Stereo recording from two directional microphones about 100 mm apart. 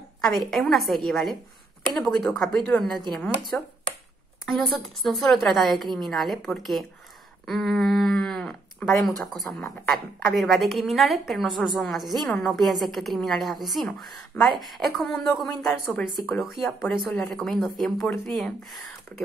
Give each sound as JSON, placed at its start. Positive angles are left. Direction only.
{"t": 0.2, "sound": "a woman's voice", "side_deg": 0}
{"t": 16.6, "sound": "speech", "side_deg": 10}
{"t": 17.4, "sound": "a woman's voice", "side_deg": 0}
{"t": 18.0, "sound": "speech", "side_deg": 15}
{"t": 18.3, "sound": "speech", "side_deg": 0}